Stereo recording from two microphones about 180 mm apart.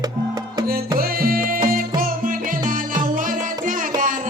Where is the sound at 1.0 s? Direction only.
55° right (ahead or behind).